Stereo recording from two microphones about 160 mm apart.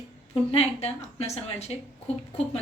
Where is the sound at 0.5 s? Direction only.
40° left (ahead or behind).